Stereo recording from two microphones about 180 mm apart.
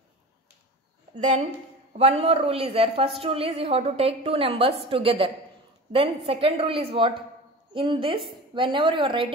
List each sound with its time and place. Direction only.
2.0 s a woman's voice: 35° right (ahead or behind)